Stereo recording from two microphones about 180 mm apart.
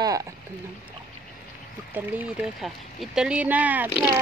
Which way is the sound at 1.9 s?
10° right (ahead or behind).